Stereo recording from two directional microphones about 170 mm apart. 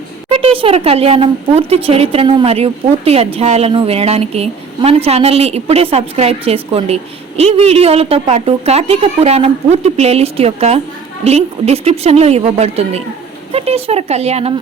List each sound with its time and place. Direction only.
0.3 s speech: 35° right (ahead or behind)